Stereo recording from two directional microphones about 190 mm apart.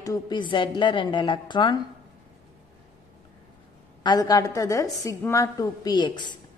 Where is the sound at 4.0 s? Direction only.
20° left (ahead or behind).